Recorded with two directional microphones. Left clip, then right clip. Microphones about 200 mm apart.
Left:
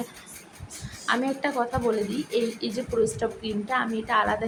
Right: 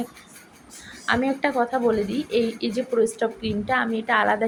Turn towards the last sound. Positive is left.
turn(degrees=-20)  # may be behind; listen again after turning